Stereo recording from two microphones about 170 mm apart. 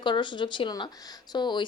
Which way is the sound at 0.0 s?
25° left (ahead or behind).